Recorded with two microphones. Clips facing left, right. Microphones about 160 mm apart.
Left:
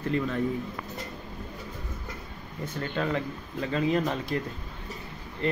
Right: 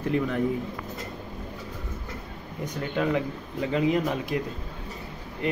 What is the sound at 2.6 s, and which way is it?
Speech, 15° right (ahead or behind).